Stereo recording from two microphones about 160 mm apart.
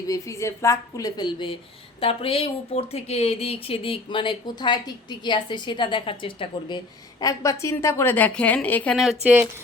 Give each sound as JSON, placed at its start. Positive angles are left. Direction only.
{"t": 0.1, "sound": "a woman's voice", "side_deg": 20}
{"t": 9.2, "sound": "speech", "side_deg": -10}